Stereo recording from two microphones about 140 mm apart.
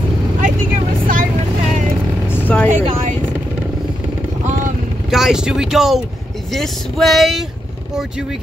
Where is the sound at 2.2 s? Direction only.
15° left (ahead or behind).